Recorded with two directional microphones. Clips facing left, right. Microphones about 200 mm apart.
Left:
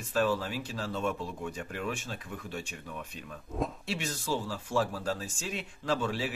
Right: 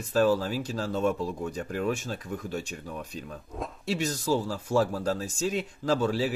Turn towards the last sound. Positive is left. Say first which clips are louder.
# right 5 dB
turn(degrees=-40)  # may be behind; listen again after turning